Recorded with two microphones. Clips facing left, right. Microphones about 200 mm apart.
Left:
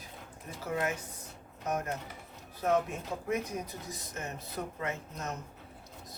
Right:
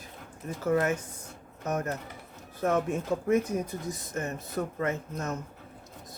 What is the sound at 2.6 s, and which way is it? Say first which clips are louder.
Speech: right 3 dB; 50° right (ahead or behind).